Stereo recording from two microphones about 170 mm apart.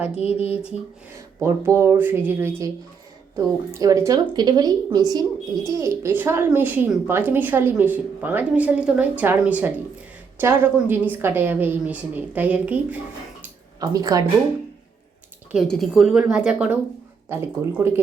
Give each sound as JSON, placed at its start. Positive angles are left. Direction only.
{"t": 1.4, "sound": "speech", "side_deg": -15}
{"t": 13.7, "sound": "speech", "side_deg": -20}
{"t": 15.5, "sound": "speech", "side_deg": 0}